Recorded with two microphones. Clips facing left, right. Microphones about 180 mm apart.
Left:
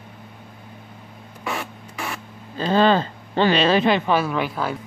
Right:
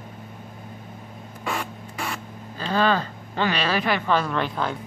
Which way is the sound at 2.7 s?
25° left (ahead or behind).